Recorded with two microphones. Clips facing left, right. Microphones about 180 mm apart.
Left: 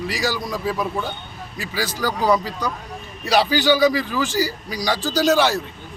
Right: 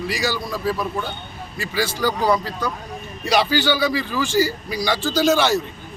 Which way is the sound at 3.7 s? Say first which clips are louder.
Left 4 dB; 5° left (ahead or behind).